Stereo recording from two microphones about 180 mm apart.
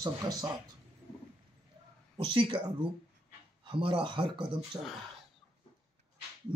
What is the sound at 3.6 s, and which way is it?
Speech, 30° right (ahead or behind).